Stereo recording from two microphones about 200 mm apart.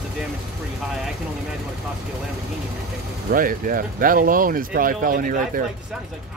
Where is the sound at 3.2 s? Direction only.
45° right (ahead or behind).